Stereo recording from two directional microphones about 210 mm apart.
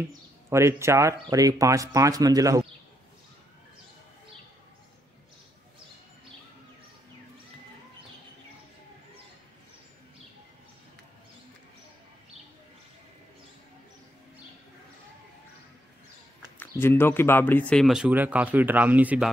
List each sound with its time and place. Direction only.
0.5 s speech: 15° right (ahead or behind)
16.5 s speech: 10° left (ahead or behind); by 19.2 s 10° right (ahead or behind)